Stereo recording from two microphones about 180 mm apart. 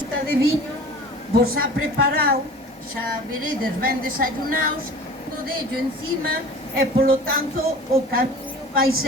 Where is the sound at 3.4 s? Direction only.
55° right (ahead or behind).